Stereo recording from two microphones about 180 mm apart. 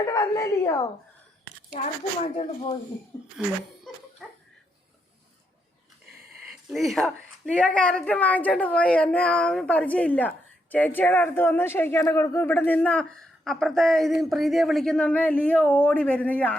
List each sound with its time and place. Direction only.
0.1 s speech: 20° left (ahead or behind)
1.7 s speech: 35° left (ahead or behind)
6.5 s speech: centre (ahead or behind)